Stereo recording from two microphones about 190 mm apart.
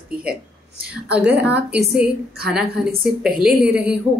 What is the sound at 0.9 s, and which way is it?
A woman's voice, 5° right (ahead or behind).